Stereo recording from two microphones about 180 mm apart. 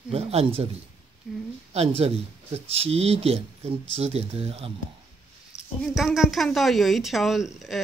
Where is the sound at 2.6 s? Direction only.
35° right (ahead or behind).